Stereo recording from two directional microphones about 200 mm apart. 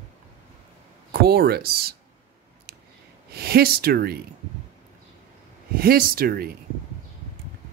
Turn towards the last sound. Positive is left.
turn(degrees=-50)  # may be behind; listen again after turning